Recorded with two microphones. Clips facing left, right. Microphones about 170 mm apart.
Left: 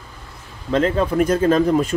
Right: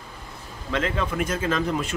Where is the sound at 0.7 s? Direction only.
35° left (ahead or behind).